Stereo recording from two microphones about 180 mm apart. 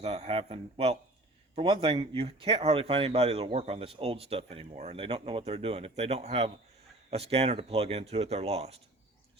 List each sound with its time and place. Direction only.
0.0 s speech: 35° right (ahead or behind)